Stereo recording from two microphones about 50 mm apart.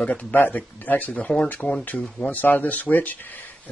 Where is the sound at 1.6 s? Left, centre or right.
Left.